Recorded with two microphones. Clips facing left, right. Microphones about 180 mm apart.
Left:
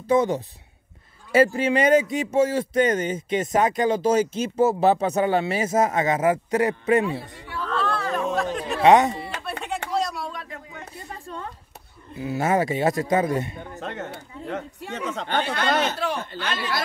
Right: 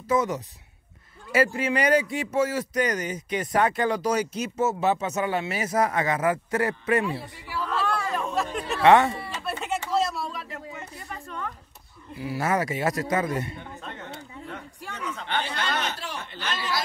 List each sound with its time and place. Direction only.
0.1 s speech: 30° left (ahead or behind)
7.1 s chatter: centre (ahead or behind)
8.7 s speech: 15° left (ahead or behind)
9.4 s a sound: centre (ahead or behind)
11.2 s a sound: 30° left (ahead or behind)
12.2 s speech: 25° left (ahead or behind)
13.7 s a sound: 80° left
14.8 s speech: 25° left (ahead or behind)
15.2 s speech: 50° left (ahead or behind)